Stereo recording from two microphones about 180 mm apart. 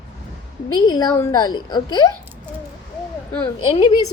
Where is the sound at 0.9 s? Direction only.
20° left (ahead or behind).